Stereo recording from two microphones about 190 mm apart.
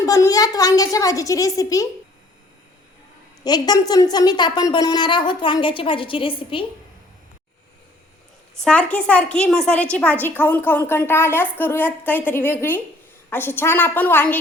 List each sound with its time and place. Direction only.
0.0 s a woman's voice: 20° left (ahead or behind)
3.4 s a woman's voice: 20° left (ahead or behind)
8.6 s a woman's voice: 5° left (ahead or behind)